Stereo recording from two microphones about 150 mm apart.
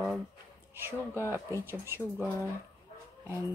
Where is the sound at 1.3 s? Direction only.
15° right (ahead or behind).